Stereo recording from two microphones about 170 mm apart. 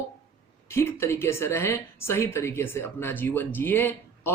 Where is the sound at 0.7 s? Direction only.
15° left (ahead or behind).